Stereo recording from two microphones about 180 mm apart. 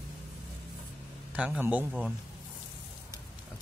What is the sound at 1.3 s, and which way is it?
Speech, 5° right (ahead or behind).